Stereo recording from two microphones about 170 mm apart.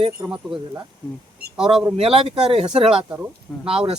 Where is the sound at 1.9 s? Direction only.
35° right (ahead or behind).